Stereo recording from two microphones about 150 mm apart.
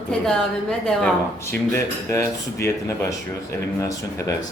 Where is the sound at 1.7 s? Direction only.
20° left (ahead or behind).